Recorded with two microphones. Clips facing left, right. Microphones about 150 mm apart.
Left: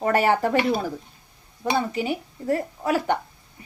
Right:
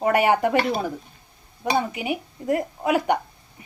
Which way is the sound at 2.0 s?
15° right (ahead or behind).